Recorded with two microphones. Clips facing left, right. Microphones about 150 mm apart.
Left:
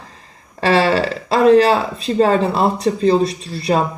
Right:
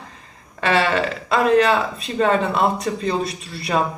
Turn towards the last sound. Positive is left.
turn(degrees=30)  # may be behind; listen again after turning